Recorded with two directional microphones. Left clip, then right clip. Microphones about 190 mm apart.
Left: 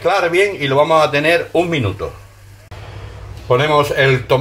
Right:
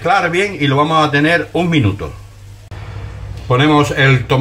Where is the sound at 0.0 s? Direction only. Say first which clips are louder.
Even; 25° left (ahead or behind).